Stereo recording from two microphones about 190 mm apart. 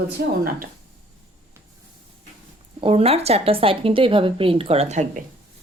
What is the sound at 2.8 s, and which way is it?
A woman's voice, 30° right (ahead or behind).